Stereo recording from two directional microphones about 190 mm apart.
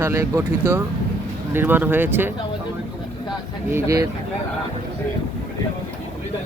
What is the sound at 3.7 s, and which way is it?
Speech, 15° right (ahead or behind).